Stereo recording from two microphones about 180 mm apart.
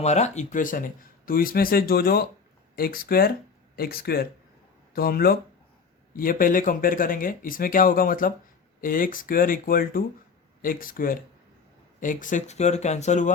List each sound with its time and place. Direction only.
0.0 s speech: 40° left (ahead or behind)